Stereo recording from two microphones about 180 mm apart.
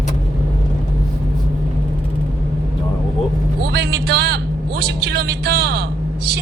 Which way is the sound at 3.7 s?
65° right (ahead or behind).